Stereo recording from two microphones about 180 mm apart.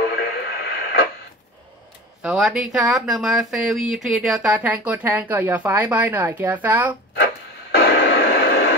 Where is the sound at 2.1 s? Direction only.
Centre (ahead or behind).